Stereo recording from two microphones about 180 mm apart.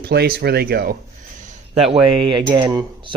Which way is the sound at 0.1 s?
60° right (ahead or behind).